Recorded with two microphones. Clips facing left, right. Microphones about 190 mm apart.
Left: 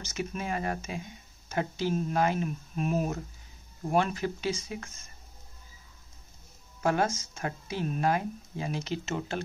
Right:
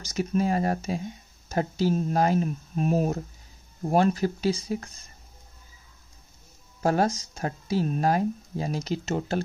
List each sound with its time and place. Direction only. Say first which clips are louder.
0.0 s speech: right 9 dB; 35° right (ahead or behind)
6.8 s speech: right 4 dB; 35° right (ahead or behind)